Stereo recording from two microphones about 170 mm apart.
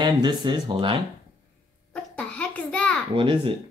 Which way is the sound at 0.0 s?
25° right (ahead or behind).